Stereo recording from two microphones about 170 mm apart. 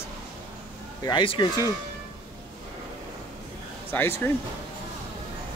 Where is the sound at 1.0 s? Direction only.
30° left (ahead or behind).